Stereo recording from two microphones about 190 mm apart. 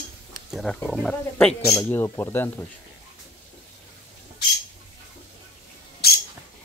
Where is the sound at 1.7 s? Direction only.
15° left (ahead or behind).